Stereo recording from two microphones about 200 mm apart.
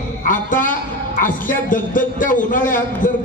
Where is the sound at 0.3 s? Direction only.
40° left (ahead or behind).